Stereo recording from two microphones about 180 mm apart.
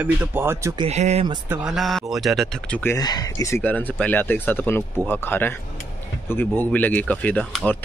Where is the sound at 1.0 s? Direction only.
35° right (ahead or behind).